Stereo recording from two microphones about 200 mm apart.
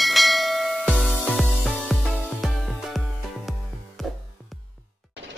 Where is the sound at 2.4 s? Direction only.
Centre (ahead or behind).